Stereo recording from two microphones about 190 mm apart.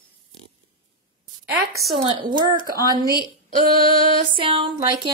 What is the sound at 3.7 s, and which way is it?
Music, 50° right (ahead or behind).